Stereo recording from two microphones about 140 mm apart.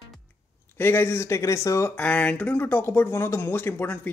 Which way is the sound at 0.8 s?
15° left (ahead or behind).